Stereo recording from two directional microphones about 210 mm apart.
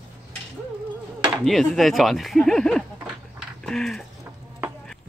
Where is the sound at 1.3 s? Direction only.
Centre (ahead or behind).